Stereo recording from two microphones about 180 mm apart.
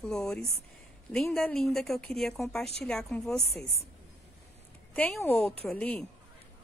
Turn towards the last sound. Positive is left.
turn(degrees=5)  # may be behind; listen again after turning